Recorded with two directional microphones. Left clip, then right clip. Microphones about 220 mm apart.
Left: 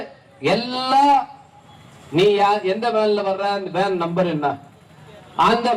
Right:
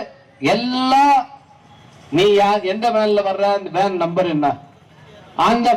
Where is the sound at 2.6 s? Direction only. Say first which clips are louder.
Right 2 dB; 40° right (ahead or behind).